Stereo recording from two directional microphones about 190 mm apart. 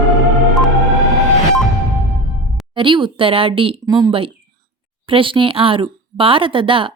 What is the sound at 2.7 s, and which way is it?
Speech, 25° right (ahead or behind).